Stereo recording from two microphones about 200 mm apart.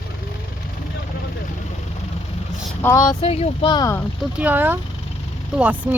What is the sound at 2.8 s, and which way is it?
Speech, 15° left (ahead or behind).